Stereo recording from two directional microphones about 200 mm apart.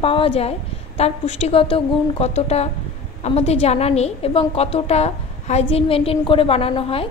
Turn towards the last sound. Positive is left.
turn(degrees=30)  # may be behind; listen again after turning